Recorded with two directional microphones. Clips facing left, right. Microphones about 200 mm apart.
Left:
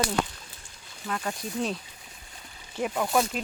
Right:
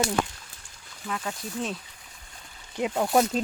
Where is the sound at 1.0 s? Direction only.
5° left (ahead or behind).